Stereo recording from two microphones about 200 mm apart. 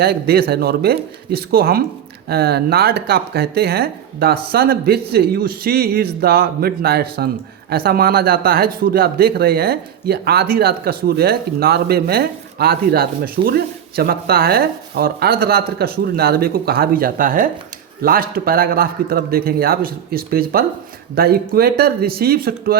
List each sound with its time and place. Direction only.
0.0 s speech: 50° right (ahead or behind)